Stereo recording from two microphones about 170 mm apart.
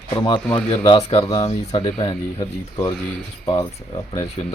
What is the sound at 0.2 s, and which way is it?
Speech, 25° left (ahead or behind).